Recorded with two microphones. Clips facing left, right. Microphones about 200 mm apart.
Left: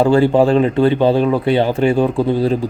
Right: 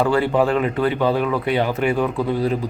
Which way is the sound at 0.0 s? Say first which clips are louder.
Left 6 dB; 30° left (ahead or behind).